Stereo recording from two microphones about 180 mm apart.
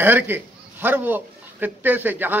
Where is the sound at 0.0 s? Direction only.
10° right (ahead or behind).